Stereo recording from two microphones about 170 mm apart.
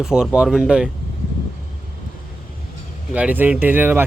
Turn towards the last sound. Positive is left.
turn(degrees=-10)  # may be behind; listen again after turning